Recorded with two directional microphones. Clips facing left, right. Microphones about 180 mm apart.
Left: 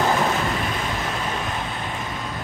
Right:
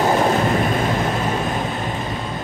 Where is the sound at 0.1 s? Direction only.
40° right (ahead or behind).